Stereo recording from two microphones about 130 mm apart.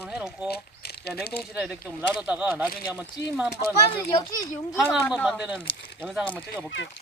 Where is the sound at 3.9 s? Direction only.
30° left (ahead or behind).